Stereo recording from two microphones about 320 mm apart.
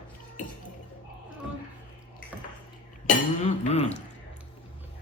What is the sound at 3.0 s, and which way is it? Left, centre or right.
Chink, left.